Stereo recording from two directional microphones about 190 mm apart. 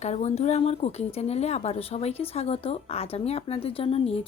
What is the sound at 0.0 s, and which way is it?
Speech, 35° left (ahead or behind).